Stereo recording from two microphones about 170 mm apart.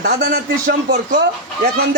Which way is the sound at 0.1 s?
70° right (ahead or behind).